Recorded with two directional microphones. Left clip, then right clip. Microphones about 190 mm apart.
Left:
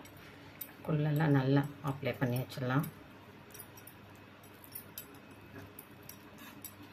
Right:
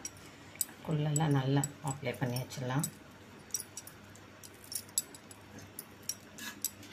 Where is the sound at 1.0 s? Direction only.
10° left (ahead or behind).